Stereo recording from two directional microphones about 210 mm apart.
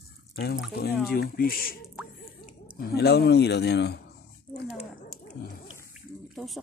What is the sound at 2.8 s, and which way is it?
A man's voice, 50° left (ahead or behind).